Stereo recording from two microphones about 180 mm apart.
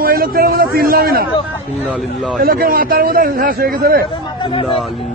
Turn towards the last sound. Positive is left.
turn(degrees=-55)  # may be behind; listen again after turning